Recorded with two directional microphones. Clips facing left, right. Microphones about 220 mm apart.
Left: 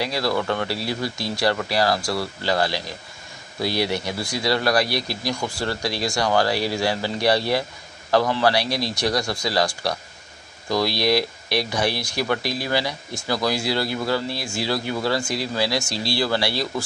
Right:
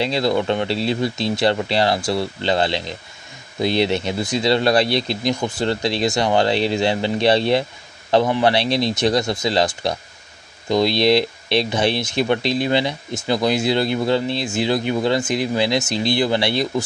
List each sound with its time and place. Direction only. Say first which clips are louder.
0.0 s speech: right 4 dB; 25° right (ahead or behind)